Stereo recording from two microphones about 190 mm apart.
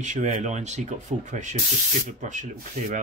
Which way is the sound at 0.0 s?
40° right (ahead or behind).